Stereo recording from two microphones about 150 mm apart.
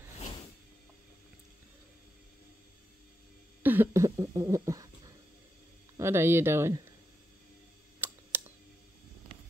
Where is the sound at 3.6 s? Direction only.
15° right (ahead or behind).